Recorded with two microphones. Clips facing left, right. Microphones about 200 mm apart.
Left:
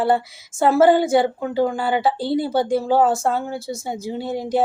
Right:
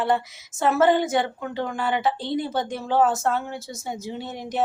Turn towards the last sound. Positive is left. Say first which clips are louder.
# left 8 dB
turn(degrees=30)  # may be behind; listen again after turning